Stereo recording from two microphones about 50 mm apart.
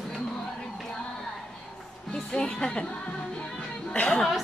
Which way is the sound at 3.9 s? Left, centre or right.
Left.